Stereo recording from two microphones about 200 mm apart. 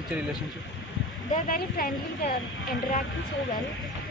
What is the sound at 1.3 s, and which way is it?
A woman's voice, 45° left (ahead or behind).